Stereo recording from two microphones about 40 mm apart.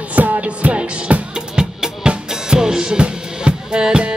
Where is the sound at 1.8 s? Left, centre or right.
Centre.